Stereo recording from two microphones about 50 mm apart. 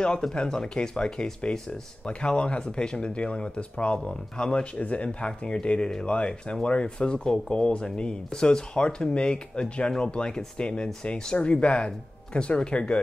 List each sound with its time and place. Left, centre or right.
0.3 s speech: centre
4.7 s speech: left